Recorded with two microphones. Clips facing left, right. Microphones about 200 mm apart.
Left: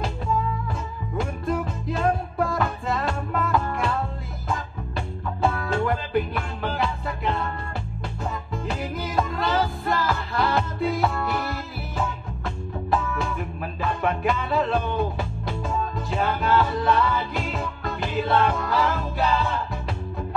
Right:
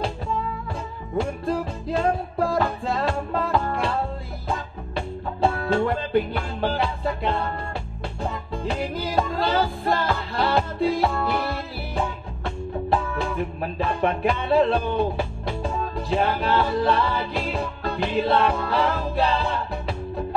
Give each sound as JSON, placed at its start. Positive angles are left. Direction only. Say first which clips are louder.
{"t": 1.1, "sound": "music", "louder": "right 2 dB", "side_deg": -30}
{"t": 5.4, "sound": "music", "louder": "right 3 dB", "side_deg": -30}